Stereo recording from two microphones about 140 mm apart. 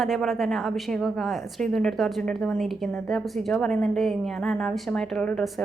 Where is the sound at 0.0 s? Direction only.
Centre (ahead or behind).